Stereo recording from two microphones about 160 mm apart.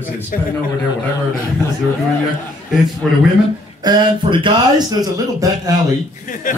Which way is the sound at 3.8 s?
25° right (ahead or behind).